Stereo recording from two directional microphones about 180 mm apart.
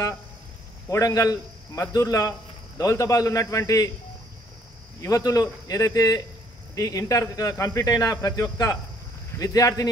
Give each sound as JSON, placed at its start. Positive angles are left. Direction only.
{"t": 0.8, "sound": "a man's voice", "side_deg": 15}
{"t": 5.0, "sound": "speech", "side_deg": 20}